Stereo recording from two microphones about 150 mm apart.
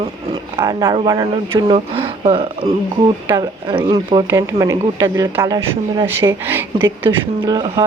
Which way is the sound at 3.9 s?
35° right (ahead or behind).